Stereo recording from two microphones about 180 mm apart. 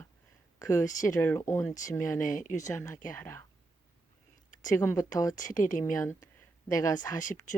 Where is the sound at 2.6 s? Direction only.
15° left (ahead or behind).